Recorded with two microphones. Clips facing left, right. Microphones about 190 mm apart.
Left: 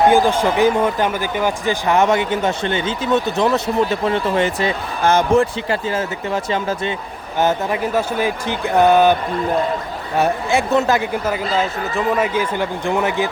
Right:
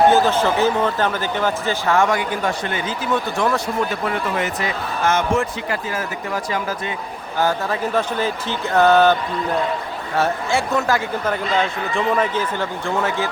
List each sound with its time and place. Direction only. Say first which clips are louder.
0.1 s speech: left 2 dB; 10° left (ahead or behind)
10.2 s speech: left 3 dB; 20° left (ahead or behind)
11.5 s speech: left 1 dB; 5° left (ahead or behind)